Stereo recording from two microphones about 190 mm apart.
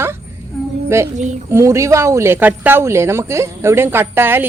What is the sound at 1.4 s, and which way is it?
Speech, 15° right (ahead or behind).